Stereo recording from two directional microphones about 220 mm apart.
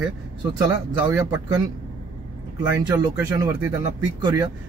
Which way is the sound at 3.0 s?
15° right (ahead or behind).